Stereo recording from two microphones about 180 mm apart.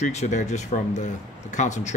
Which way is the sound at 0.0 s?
40° left (ahead or behind).